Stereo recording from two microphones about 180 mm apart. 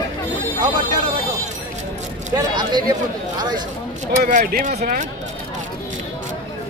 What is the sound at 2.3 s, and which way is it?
Speech, 25° right (ahead or behind).